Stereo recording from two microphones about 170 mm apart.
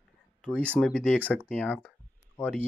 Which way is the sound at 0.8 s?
10° left (ahead or behind).